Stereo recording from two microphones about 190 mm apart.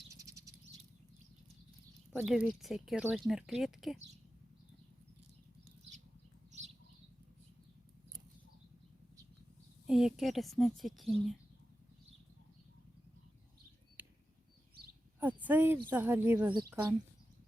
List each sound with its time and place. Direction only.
0.1 s bird flight: 15° right (ahead or behind)
2.1 s speech: 5° right (ahead or behind)
9.8 s a sound: 5° right (ahead or behind)
10.2 s speech: centre (ahead or behind)
14.0 s a sound: 10° right (ahead or behind)
15.2 s speech: 10° right (ahead or behind)